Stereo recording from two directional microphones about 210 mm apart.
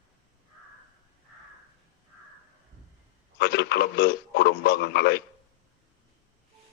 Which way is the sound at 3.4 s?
50° left (ahead or behind).